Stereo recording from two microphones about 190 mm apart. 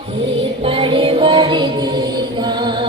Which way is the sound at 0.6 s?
30° right (ahead or behind).